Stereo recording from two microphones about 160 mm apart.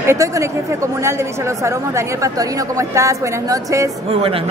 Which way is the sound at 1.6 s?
20° right (ahead or behind).